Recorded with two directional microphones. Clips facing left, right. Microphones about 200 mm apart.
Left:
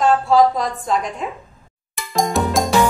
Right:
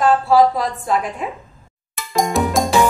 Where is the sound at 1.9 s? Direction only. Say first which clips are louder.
Right 1 dB; centre (ahead or behind).